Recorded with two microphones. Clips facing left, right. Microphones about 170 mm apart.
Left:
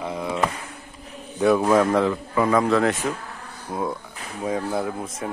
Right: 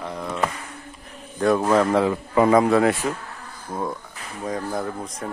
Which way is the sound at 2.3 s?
30° right (ahead or behind).